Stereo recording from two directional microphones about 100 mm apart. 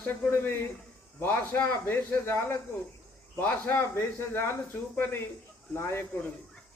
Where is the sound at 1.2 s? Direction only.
20° left (ahead or behind).